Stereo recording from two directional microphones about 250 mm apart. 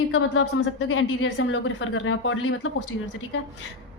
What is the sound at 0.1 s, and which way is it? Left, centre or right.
A woman's voice, left.